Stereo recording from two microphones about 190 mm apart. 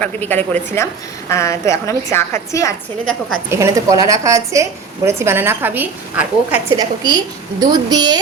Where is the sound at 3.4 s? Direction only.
15° right (ahead or behind).